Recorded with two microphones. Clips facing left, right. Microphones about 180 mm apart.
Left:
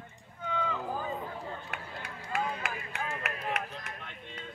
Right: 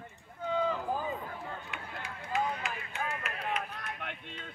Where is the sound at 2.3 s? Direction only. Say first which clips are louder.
Right 1 dB; 70° left (ahead or behind).